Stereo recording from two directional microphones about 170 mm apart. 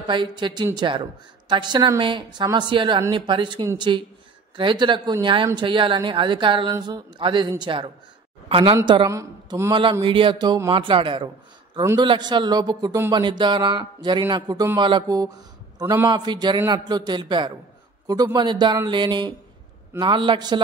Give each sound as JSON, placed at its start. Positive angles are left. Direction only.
{"t": 0.0, "sound": "a woman's voice", "side_deg": -30}